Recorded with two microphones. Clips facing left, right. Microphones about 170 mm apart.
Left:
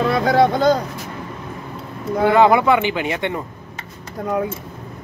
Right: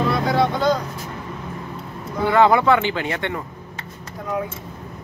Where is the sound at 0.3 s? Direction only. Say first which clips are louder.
Left 6 dB; 45° left (ahead or behind).